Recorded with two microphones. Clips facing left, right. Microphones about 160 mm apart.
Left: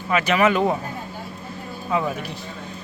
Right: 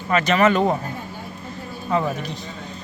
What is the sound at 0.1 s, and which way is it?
Speech, 10° left (ahead or behind).